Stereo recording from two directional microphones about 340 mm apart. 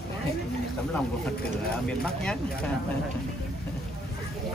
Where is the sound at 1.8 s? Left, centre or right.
Centre.